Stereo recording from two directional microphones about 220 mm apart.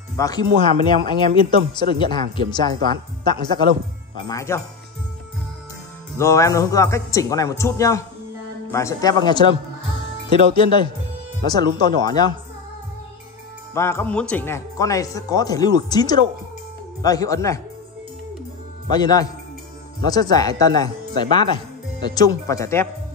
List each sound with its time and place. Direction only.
0.2 s speech: 15° left (ahead or behind)
6.1 s speech: 15° left (ahead or behind)
10.5 s speech: 20° left (ahead or behind)
13.7 s speech: 10° left (ahead or behind)
18.9 s speech: 20° left (ahead or behind)